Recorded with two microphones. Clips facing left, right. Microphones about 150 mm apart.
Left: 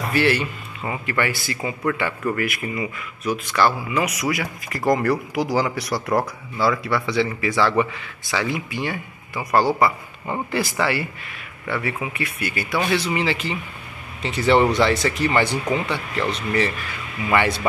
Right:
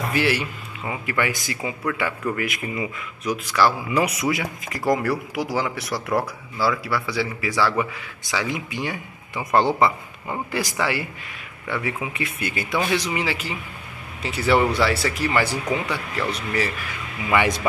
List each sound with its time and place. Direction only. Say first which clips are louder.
0.1 s a man's voice: left 4 dB; 10° right (ahead or behind)
2.4 s speech: left 1 dB; 20° right (ahead or behind)
3.9 s a man's voice: right 1 dB; 30° right (ahead or behind)
12.9 s a man's voice: left 2 dB; 15° right (ahead or behind)